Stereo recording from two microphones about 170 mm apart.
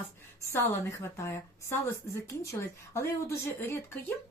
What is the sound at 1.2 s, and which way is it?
A woman's voice, 15° left (ahead or behind).